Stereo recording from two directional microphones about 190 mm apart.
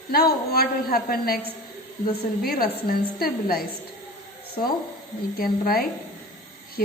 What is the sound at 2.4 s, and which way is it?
A man's voice, 50° left (ahead or behind).